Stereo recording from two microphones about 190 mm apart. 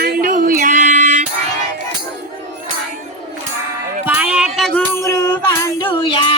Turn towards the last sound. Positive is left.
turn(degrees=25)  # may be behind; listen again after turning